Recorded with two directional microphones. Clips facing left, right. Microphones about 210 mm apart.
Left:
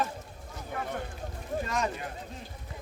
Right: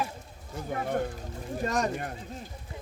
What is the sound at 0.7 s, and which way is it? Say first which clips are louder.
Speech: right 6 dB; 50° right (ahead or behind).